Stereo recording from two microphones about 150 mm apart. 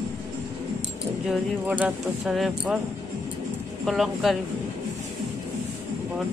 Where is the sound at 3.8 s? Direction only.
Centre (ahead or behind).